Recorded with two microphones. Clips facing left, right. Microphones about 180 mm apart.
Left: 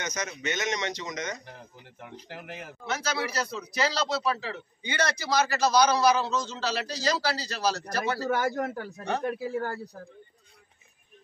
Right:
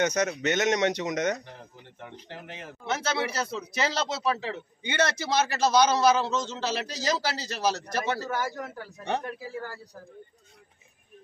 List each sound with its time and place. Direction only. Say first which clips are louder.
0.0 s speech: right 8 dB; 65° right (ahead or behind)
2.0 s speech: even; 5° left (ahead or behind)
2.9 s a man's voice: right 2 dB; 25° right (ahead or behind)
8.3 s a man's voice: left 4 dB; 55° left (ahead or behind)